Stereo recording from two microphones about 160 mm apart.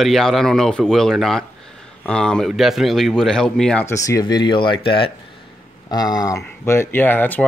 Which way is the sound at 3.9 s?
20° left (ahead or behind).